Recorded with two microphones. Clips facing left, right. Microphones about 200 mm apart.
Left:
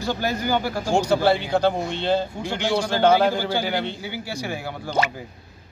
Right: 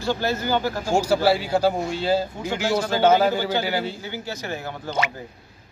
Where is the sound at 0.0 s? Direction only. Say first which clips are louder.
Right 1 dB; 15° left (ahead or behind).